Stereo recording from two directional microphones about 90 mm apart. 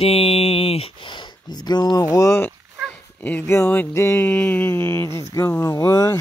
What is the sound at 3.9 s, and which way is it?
Speech, 30° left (ahead or behind).